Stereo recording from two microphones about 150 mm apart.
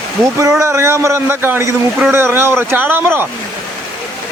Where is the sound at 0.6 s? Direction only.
20° right (ahead or behind).